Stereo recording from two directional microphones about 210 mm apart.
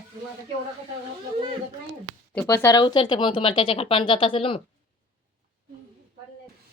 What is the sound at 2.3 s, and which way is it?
Speech, 10° left (ahead or behind).